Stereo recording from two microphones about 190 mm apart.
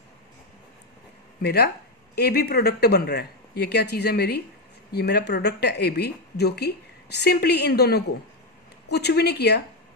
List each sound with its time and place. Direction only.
1.4 s a woman's voice: 55° left (ahead or behind)